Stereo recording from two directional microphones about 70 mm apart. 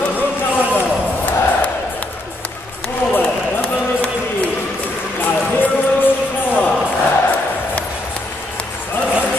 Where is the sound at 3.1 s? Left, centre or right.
Left.